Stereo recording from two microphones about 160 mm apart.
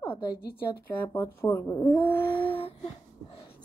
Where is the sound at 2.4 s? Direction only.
35° left (ahead or behind).